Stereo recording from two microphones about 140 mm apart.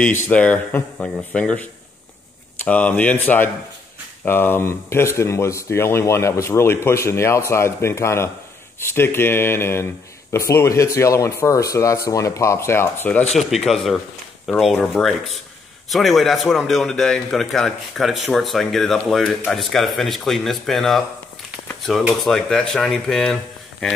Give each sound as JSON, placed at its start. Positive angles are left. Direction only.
{"t": 0.2, "sound": "speech", "side_deg": 10}
{"t": 13.4, "sound": "speech", "side_deg": 0}